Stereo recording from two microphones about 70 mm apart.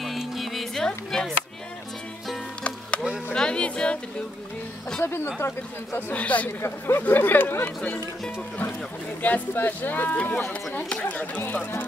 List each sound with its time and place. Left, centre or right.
0.0 s music: centre
3.3 s music: centre
5.0 s speech: left
5.9 s speech: left
9.2 s speech: left